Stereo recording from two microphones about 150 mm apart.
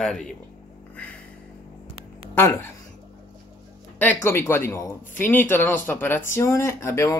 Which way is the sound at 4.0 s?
15° left (ahead or behind).